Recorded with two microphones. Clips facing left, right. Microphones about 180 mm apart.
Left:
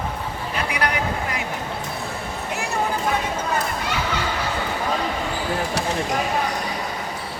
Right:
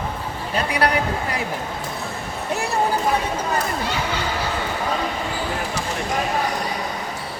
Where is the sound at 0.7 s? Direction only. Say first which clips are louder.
Right 4 dB; 35° right (ahead or behind).